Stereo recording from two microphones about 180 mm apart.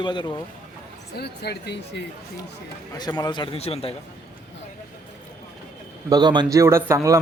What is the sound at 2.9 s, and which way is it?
A man's voice, 20° left (ahead or behind).